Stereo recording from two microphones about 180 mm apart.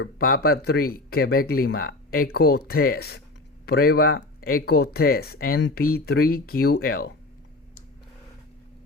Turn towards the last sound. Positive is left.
turn(degrees=55)  # may be behind; listen again after turning